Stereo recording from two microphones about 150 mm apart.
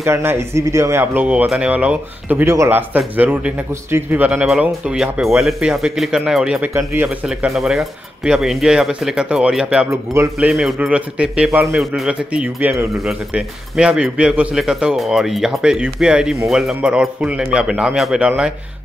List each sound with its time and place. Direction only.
0.0 s speech: 15° right (ahead or behind)
7.2 s speech: 5° right (ahead or behind)
9.8 s a man's voice: 20° right (ahead or behind)
10.4 s speech: 5° right (ahead or behind)